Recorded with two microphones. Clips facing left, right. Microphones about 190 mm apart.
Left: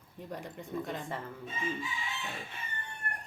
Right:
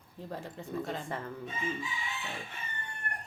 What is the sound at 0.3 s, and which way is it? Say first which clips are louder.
Speech: right 1 dB; 15° left (ahead or behind).